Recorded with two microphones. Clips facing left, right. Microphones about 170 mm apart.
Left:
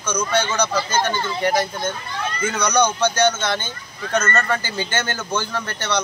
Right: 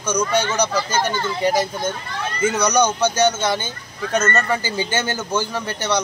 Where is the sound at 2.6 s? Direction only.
15° right (ahead or behind).